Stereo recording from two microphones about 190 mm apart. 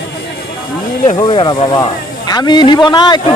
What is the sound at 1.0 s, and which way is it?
Speech, 25° left (ahead or behind).